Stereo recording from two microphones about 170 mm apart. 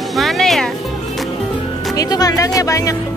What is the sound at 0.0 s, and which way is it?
Music, centre (ahead or behind).